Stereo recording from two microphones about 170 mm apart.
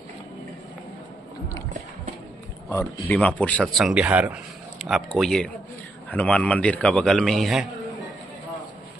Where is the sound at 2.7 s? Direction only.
15° left (ahead or behind).